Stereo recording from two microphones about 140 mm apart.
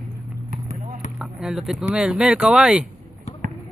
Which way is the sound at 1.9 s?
5° right (ahead or behind).